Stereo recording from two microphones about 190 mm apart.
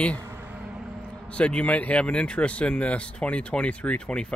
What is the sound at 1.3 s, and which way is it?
Speech, 5° left (ahead or behind).